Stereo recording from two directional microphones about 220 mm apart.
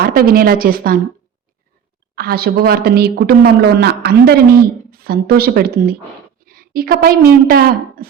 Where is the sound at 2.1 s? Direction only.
45° right (ahead or behind).